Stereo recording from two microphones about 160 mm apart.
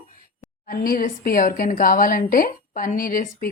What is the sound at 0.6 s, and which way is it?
A woman's voice, 60° left (ahead or behind).